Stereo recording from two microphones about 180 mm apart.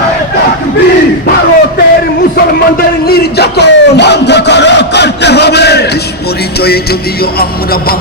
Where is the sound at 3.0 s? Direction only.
60° left (ahead or behind).